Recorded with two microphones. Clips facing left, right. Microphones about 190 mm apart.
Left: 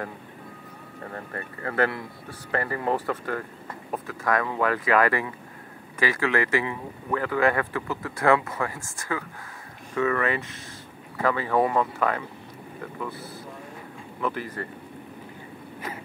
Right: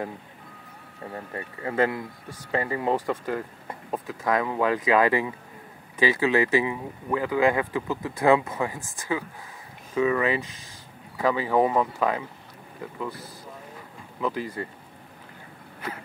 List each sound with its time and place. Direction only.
1.1 s speech: 15° right (ahead or behind)
14.2 s speech: 15° right (ahead or behind)